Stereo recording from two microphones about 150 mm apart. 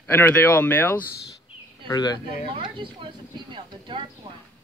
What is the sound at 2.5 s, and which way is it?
Speech, 35° right (ahead or behind).